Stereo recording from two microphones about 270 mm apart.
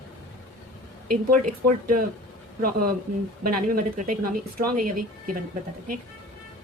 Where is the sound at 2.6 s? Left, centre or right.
Right.